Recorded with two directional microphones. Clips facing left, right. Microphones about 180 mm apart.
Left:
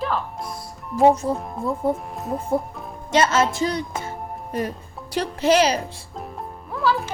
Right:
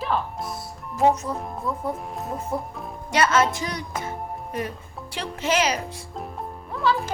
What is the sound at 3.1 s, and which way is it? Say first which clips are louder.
Speech: left 2 dB; 25° left (ahead or behind).